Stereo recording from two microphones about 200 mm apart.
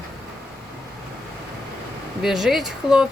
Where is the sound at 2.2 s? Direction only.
Centre (ahead or behind).